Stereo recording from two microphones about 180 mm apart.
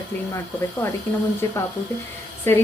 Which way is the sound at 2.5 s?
10° left (ahead or behind).